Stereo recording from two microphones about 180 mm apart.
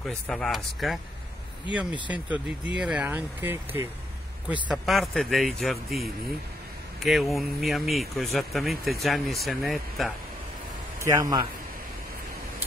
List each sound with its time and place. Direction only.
0.0 s speech: centre (ahead or behind)
2.7 s speech: 5° right (ahead or behind)
11.0 s speech: 20° right (ahead or behind)